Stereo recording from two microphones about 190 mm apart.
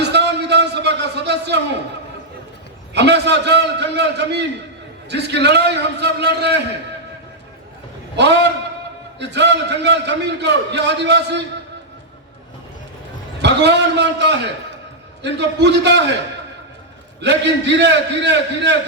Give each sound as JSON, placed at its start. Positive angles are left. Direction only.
{"t": 0.0, "sound": "music", "side_deg": -65}
{"t": 2.9, "sound": "a man's voice", "side_deg": -65}
{"t": 8.1, "sound": "a man's voice", "side_deg": -65}
{"t": 13.4, "sound": "a man's voice", "side_deg": -65}
{"t": 17.2, "sound": "a man's voice", "side_deg": -65}